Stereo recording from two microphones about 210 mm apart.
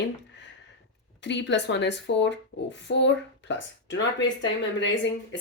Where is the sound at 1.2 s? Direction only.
55° left (ahead or behind).